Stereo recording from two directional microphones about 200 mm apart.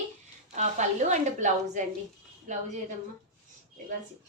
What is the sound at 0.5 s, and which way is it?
A woman's voice, 35° right (ahead or behind).